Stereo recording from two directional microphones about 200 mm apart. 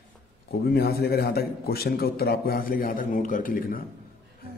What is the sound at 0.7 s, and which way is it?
Speech, 50° left (ahead or behind).